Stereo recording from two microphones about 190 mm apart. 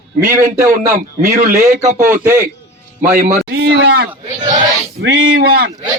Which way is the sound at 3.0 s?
45° right (ahead or behind).